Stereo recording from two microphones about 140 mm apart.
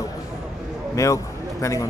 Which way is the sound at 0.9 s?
20° left (ahead or behind).